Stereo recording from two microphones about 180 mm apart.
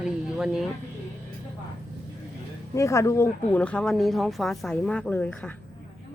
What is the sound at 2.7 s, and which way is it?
Speech, 15° left (ahead or behind).